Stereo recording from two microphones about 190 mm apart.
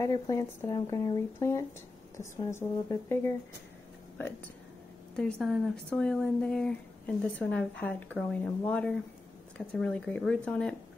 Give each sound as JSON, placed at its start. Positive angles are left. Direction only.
{"t": 0.0, "sound": "speech", "side_deg": 15}
{"t": 5.1, "sound": "speech", "side_deg": 0}